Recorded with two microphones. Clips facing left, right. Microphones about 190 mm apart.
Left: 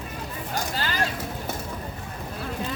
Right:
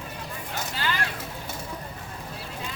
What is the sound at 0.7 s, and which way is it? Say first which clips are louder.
Vehicle: even; 40° left (ahead or behind).